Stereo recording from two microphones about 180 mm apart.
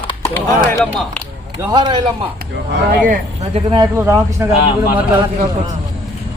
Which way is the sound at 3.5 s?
30° right (ahead or behind).